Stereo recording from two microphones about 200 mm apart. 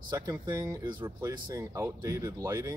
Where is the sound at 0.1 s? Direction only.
20° right (ahead or behind).